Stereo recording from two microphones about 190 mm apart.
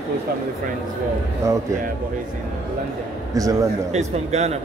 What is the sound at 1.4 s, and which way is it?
Speech, 15° right (ahead or behind).